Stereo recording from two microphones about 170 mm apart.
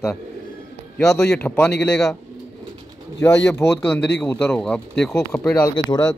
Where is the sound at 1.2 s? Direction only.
10° left (ahead or behind).